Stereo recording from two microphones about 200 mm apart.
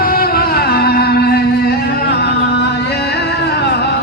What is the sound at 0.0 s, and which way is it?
Music, 45° left (ahead or behind).